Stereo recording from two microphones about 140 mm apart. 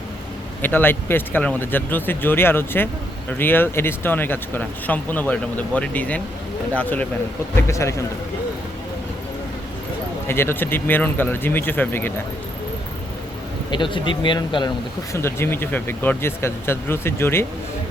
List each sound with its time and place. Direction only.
0.6 s a man's voice: 15° left (ahead or behind)
10.2 s speech: 15° left (ahead or behind)
13.7 s speech: 35° left (ahead or behind)
15.1 s speech: 15° left (ahead or behind)